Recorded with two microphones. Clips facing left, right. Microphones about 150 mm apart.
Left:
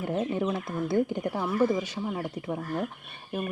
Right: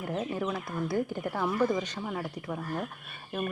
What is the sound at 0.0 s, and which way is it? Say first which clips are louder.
Speech: left 4 dB; 25° left (ahead or behind).